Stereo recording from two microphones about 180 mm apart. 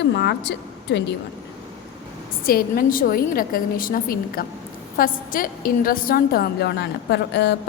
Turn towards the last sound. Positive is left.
turn(degrees=70)  # may be behind; listen again after turning